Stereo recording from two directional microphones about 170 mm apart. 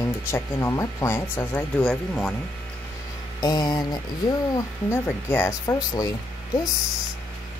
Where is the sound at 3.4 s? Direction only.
25° left (ahead or behind).